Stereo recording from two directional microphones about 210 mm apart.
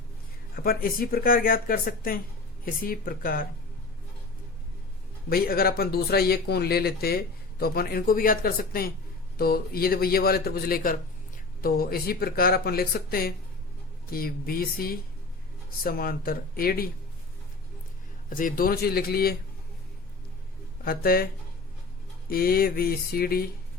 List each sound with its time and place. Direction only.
0.5 s speech: 45° left (ahead or behind)
5.3 s speech: 45° left (ahead or behind)
18.3 s speech: 40° left (ahead or behind)
20.8 s speech: 45° left (ahead or behind)
22.3 s speech: 45° left (ahead or behind)